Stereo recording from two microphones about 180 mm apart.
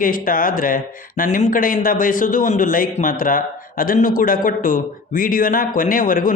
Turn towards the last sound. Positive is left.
turn(degrees=50)  # may be behind; listen again after turning